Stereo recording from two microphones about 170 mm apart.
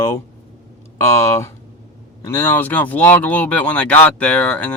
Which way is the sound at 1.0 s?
15° left (ahead or behind).